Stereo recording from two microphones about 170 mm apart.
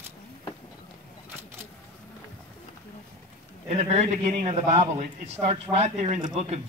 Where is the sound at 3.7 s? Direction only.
40° right (ahead or behind).